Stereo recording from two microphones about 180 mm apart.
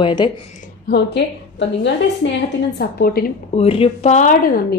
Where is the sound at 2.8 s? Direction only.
60° left (ahead or behind).